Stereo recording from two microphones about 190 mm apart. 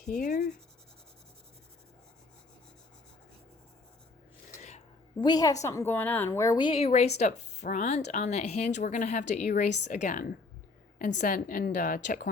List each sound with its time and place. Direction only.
0.0 s a woman's voice: 45° left (ahead or behind)
4.5 s a sound: 40° left (ahead or behind)
5.2 s a woman's voice: 20° left (ahead or behind); by 12.3 s 45° left (ahead or behind)